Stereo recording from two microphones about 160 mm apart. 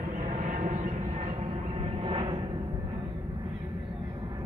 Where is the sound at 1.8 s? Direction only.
35° right (ahead or behind).